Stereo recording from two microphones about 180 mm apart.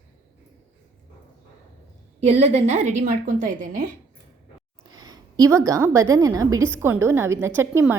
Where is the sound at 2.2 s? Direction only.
40° right (ahead or behind).